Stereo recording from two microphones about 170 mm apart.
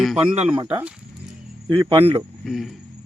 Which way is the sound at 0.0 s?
Centre (ahead or behind).